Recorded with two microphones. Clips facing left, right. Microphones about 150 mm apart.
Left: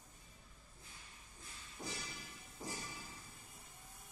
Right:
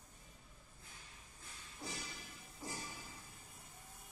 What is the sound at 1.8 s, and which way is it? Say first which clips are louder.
Music: left 1 dB; 20° left (ahead or behind).